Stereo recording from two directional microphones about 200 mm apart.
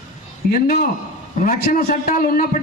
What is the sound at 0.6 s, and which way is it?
A man's voice, 45° left (ahead or behind).